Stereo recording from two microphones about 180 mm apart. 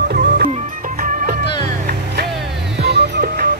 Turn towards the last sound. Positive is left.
turn(degrees=-65)  # may be behind; listen again after turning